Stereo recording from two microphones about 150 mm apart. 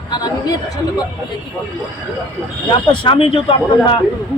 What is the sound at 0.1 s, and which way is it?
Speech, 25° left (ahead or behind).